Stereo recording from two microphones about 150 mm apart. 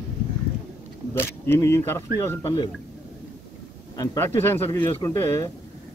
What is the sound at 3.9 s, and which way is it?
Speech, 20° left (ahead or behind).